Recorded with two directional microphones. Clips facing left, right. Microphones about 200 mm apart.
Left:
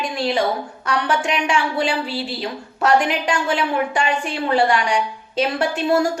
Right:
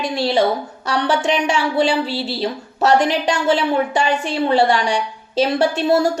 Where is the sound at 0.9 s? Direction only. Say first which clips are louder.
Right 3 dB; 35° right (ahead or behind).